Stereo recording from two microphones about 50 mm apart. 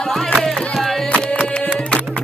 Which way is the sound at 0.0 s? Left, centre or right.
Centre.